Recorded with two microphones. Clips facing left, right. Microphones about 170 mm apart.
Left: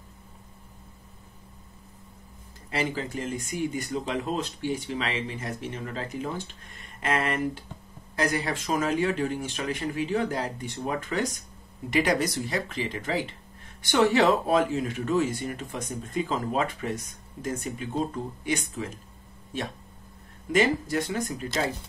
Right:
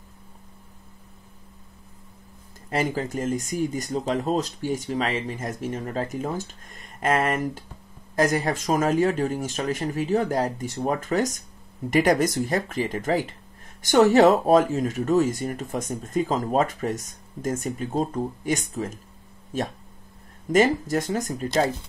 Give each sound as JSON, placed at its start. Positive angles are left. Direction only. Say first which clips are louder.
{"t": 2.7, "sound": "speech", "louder": "right 4 dB", "side_deg": -45}
{"t": 20.5, "sound": "speech", "louder": "right 4 dB", "side_deg": -45}